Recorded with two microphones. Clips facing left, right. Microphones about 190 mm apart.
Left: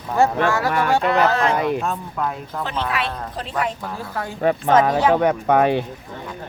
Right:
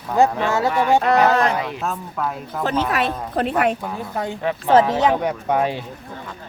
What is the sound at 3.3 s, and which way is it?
Speech, 60° right (ahead or behind).